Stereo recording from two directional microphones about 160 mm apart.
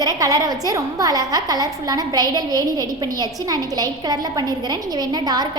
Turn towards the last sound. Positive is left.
turn(degrees=-25)  # may be behind; listen again after turning